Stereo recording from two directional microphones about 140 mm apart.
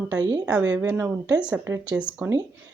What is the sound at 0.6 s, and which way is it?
Speech, 15° right (ahead or behind).